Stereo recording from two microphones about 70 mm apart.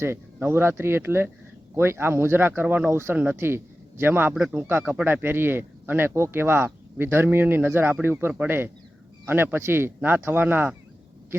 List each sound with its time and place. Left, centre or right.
0.0 s speech: right
2.6 s speech: right
2.9 s a man's voice: right